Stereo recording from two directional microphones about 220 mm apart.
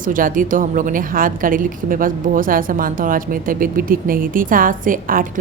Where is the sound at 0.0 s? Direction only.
40° right (ahead or behind).